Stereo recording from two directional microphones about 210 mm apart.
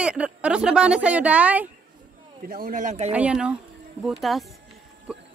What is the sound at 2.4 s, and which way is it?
Speech, 45° right (ahead or behind).